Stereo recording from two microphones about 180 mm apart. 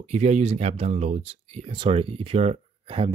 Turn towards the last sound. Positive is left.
turn(degrees=-30)  # may be behind; listen again after turning